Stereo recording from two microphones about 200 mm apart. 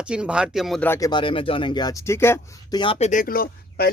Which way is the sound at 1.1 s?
25° left (ahead or behind).